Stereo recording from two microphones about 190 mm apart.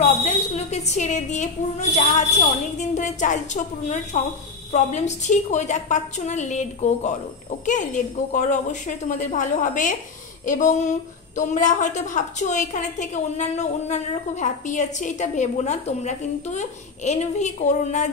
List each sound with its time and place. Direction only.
0.0 s a woman's voice: 35° left (ahead or behind)